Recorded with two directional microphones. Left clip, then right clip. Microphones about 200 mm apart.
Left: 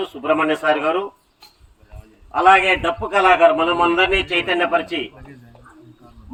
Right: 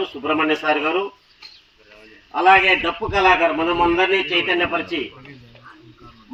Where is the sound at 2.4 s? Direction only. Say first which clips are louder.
Even; 25° left (ahead or behind).